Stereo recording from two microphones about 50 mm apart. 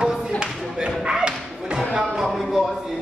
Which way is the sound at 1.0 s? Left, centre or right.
Centre.